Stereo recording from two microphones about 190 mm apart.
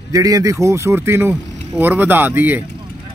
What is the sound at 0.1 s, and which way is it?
Speech, 20° right (ahead or behind).